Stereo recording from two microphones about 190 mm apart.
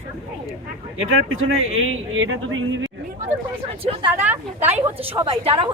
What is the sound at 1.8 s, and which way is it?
Speech, 90° right.